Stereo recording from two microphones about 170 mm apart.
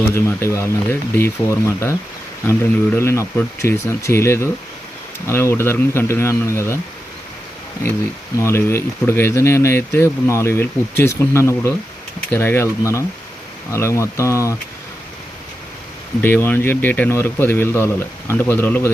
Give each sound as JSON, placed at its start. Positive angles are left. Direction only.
{"t": 0.1, "sound": "speech", "side_deg": 15}
{"t": 8.4, "sound": "speech", "side_deg": 15}
{"t": 16.2, "sound": "speech", "side_deg": 10}